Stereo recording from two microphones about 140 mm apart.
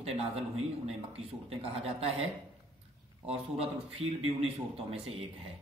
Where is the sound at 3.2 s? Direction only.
45° right (ahead or behind).